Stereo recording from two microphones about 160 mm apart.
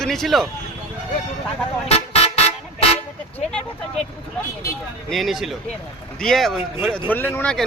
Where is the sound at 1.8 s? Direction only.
40° left (ahead or behind).